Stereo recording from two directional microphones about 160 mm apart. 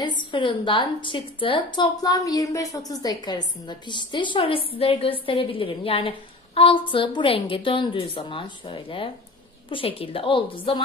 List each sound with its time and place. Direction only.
0.0 s a woman's voice: 30° left (ahead or behind)